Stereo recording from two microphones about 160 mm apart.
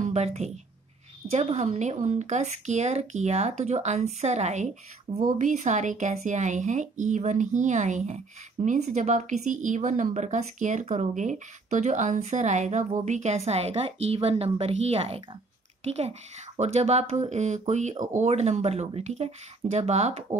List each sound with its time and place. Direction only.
0.0 s a woman's voice: 45° right (ahead or behind)
5.4 s speech: 50° right (ahead or behind)